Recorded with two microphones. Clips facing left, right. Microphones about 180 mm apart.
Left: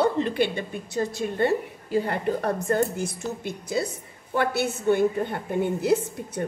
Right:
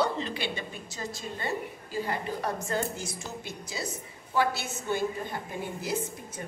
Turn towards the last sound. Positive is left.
turn(degrees=65)  # may be behind; listen again after turning